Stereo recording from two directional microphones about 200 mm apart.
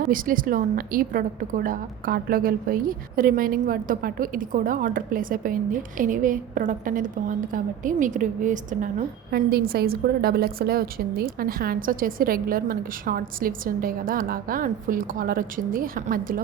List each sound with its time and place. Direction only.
0.1 s a woman's voice: 45° right (ahead or behind)